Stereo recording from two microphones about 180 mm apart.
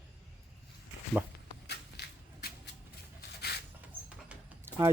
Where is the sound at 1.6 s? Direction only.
65° left (ahead or behind).